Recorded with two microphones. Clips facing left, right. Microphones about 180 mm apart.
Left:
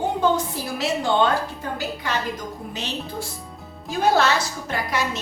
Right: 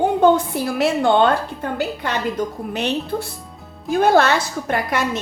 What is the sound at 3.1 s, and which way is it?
A woman's voice, 60° right (ahead or behind).